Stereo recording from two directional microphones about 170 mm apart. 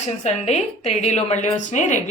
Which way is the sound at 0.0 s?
40° left (ahead or behind).